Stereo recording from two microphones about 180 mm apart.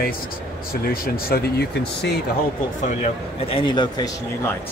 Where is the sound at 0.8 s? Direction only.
60° left (ahead or behind).